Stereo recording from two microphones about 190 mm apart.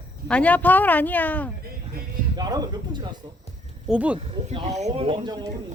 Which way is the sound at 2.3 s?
20° right (ahead or behind).